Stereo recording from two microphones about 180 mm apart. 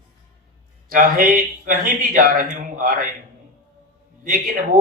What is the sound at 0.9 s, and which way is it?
Speech, 50° right (ahead or behind).